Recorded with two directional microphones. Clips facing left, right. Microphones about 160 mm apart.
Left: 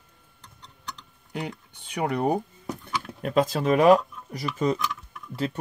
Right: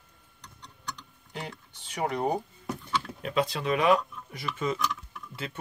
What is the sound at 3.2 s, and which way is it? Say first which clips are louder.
Speech: left 7 dB; 45° left (ahead or behind).